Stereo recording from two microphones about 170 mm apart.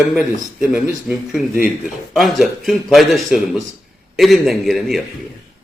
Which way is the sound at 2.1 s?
Centre (ahead or behind).